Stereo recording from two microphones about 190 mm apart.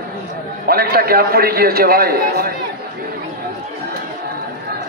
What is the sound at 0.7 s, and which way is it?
A man's voice, 50° right (ahead or behind).